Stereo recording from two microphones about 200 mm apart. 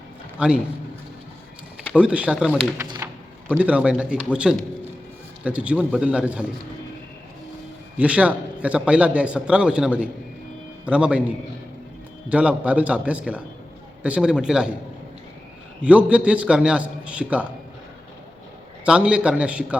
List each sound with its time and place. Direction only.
0.3 s a man's voice: 5° right (ahead or behind)
1.8 s speech: 5° right (ahead or behind)
2.7 s a sound: 20° right (ahead or behind)
3.6 s a man's voice: 5° right (ahead or behind)
7.9 s a man's voice: 5° right (ahead or behind)
12.3 s a man's voice: 5° right (ahead or behind)
15.8 s a man's voice: 5° right (ahead or behind)
18.9 s a man's voice: 5° right (ahead or behind)